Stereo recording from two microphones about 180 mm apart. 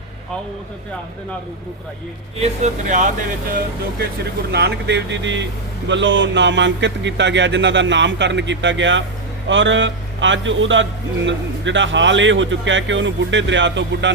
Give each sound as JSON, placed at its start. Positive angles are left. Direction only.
{"t": 2.4, "sound": "speech", "side_deg": -40}
{"t": 4.5, "sound": "speech", "side_deg": -70}